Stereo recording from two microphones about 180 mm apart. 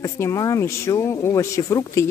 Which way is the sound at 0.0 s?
15° left (ahead or behind).